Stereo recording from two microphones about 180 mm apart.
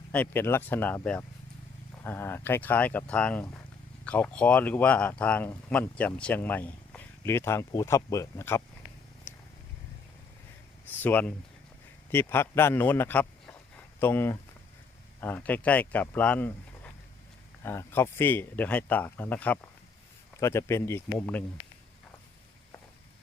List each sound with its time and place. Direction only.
0.1 s speech: 10° left (ahead or behind)
10.8 s speech: 10° left (ahead or behind)